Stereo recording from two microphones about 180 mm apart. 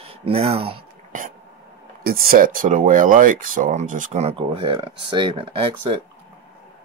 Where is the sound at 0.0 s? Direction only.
30° right (ahead or behind).